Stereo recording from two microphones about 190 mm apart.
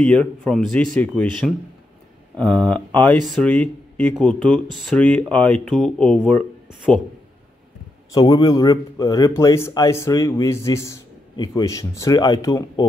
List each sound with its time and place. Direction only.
0.0 s speech: 5° left (ahead or behind)
8.1 s speech: 20° left (ahead or behind)